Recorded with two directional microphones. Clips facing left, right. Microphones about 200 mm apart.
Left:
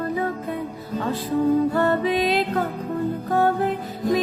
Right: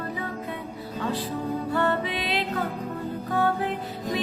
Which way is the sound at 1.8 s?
40° left (ahead or behind).